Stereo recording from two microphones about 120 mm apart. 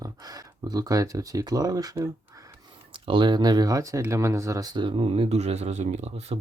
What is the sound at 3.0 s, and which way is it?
Speech, 40° right (ahead or behind).